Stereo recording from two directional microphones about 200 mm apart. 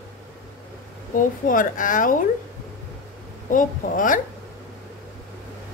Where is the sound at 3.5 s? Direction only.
40° left (ahead or behind).